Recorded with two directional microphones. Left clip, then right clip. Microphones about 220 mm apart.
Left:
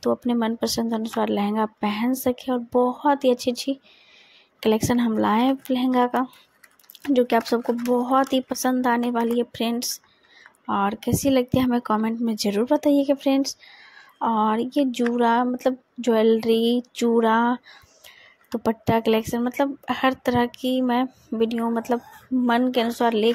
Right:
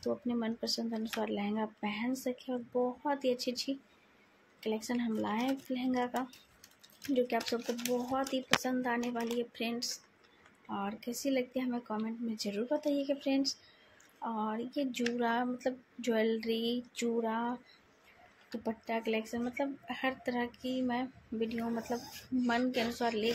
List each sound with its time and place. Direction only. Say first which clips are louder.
0.0 s speech: left 13 dB; 35° left (ahead or behind)